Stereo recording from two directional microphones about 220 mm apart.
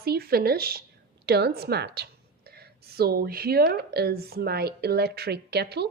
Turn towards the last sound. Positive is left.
turn(degrees=-50)  # may be behind; listen again after turning